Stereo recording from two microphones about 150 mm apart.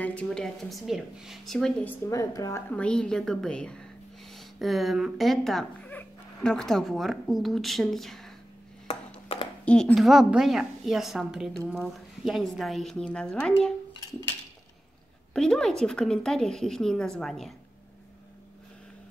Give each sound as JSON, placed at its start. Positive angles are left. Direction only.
{"t": 0.0, "sound": "a woman's voice", "side_deg": 10}
{"t": 1.9, "sound": "a woman's voice", "side_deg": 20}
{"t": 2.7, "sound": "a woman's voice", "side_deg": 5}
{"t": 9.3, "sound": "a sound", "side_deg": 40}
{"t": 9.7, "sound": "a woman's voice", "side_deg": 5}
{"t": 15.3, "sound": "a woman's voice", "side_deg": 5}